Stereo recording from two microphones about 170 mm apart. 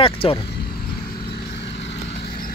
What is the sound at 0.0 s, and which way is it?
Speech, 30° left (ahead or behind).